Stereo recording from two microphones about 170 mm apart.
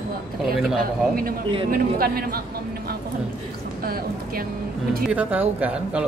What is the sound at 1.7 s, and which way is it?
Speech, 60° right (ahead or behind).